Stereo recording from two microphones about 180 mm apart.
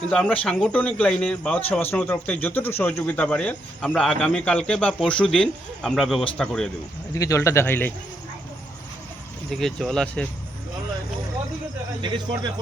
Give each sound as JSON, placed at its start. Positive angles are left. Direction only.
{"t": 0.1, "sound": "speech", "side_deg": 5}
{"t": 7.1, "sound": "speech", "side_deg": 20}
{"t": 9.5, "sound": "speech", "side_deg": 0}
{"t": 12.0, "sound": "speech", "side_deg": -25}